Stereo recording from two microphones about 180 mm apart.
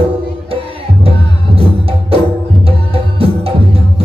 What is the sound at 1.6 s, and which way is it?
Music, 30° right (ahead or behind).